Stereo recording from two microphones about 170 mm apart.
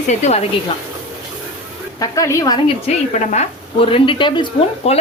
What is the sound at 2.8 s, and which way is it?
A woman's voice, 40° left (ahead or behind).